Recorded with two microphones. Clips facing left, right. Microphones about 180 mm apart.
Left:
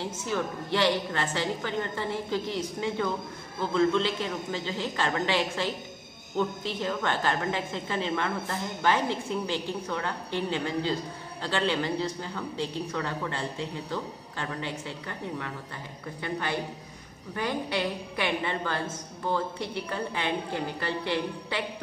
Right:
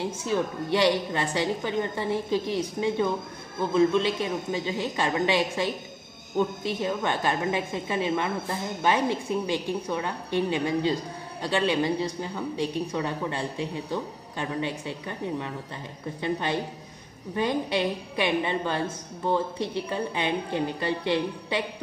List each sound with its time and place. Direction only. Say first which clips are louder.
0.0 s a woman's voice: right 4 dB; 15° right (ahead or behind)